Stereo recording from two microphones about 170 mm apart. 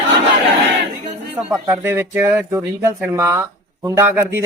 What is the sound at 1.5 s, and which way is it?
Speech, 15° right (ahead or behind).